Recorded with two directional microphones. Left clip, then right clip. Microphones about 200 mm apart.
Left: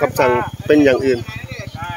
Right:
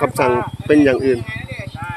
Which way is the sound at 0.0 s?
Centre (ahead or behind).